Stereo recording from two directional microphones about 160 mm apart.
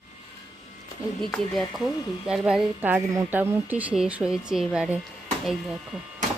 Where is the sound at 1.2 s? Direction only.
Centre (ahead or behind).